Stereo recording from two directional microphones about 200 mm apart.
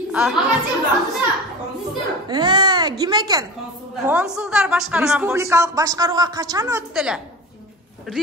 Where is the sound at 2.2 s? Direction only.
20° right (ahead or behind).